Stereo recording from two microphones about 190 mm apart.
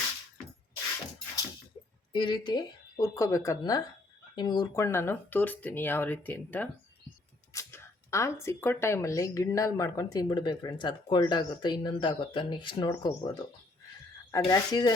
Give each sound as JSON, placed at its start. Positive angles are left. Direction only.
{"t": 2.1, "sound": "speech", "side_deg": 25}
{"t": 14.3, "sound": "speech", "side_deg": 20}